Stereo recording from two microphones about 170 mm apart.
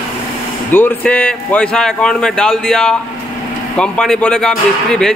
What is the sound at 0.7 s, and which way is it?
A man's voice, 10° left (ahead or behind).